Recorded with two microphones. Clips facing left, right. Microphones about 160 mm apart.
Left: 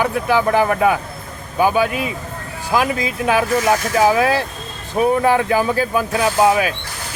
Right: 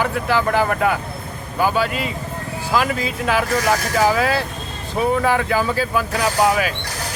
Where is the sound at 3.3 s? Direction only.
15° left (ahead or behind).